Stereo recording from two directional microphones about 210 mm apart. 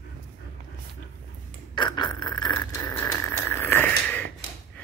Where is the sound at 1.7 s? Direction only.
20° left (ahead or behind).